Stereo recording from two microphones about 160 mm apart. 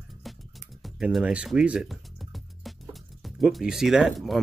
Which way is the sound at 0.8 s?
5° right (ahead or behind).